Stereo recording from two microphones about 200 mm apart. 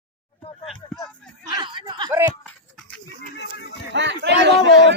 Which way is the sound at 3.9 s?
60° right (ahead or behind).